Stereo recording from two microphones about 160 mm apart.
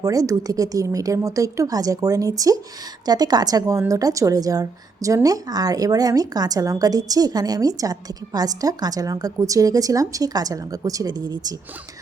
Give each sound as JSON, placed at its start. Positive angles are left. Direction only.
{"t": 0.0, "sound": "a woman's voice", "side_deg": -20}